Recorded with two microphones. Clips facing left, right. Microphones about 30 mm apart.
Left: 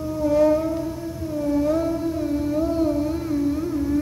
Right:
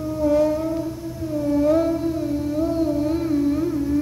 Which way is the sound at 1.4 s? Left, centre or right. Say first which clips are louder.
Right 2 dB; centre.